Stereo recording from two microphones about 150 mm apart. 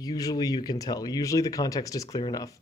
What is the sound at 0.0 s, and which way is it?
A man's voice, 25° left (ahead or behind).